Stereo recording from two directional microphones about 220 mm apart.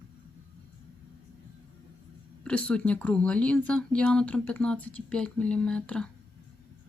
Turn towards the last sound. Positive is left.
turn(degrees=5)  # may be behind; listen again after turning